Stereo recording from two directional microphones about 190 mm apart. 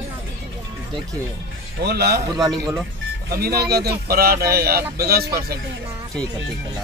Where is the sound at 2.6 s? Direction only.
15° right (ahead or behind).